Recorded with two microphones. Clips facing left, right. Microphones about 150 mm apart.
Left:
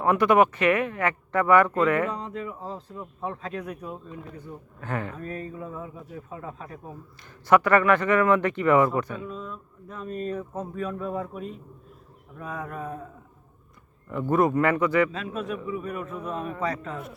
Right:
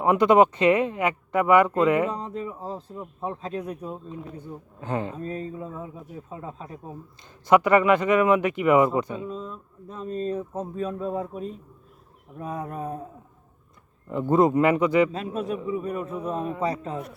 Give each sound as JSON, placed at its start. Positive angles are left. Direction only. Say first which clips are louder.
{"t": 0.0, "sound": "speech", "louder": "right 2 dB", "side_deg": -20}
{"t": 2.0, "sound": "a man's voice", "louder": "right 2 dB", "side_deg": -35}
{"t": 2.9, "sound": "speech", "louder": "right 1 dB", "side_deg": -20}
{"t": 9.3, "sound": "a man's voice", "louder": "right 2 dB", "side_deg": -30}
{"t": 14.1, "sound": "speech", "louder": "right 3 dB", "side_deg": -20}
{"t": 15.1, "sound": "a man's voice", "louder": "right 3 dB", "side_deg": -35}